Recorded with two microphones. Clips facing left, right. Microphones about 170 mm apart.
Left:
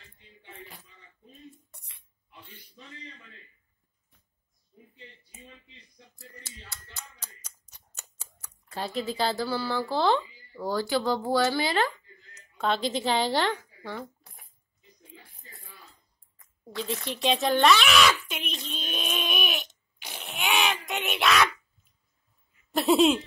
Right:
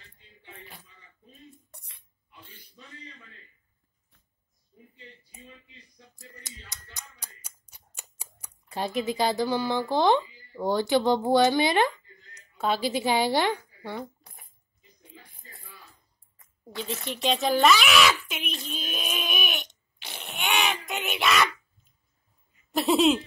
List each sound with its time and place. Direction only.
6.4 s speech: 15° right (ahead or behind)
12.5 s a woman's voice: 10° right (ahead or behind)
16.3 s speech: centre (ahead or behind)
20.3 s a sound: centre (ahead or behind)
22.7 s speech: centre (ahead or behind)